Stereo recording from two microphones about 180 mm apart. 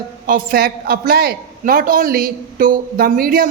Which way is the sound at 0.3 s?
50° right (ahead or behind).